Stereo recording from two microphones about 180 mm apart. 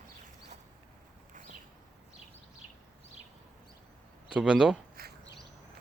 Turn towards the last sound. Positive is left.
turn(degrees=-5)  # may be behind; listen again after turning